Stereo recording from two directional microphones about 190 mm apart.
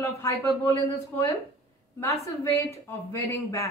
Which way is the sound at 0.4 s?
15° left (ahead or behind).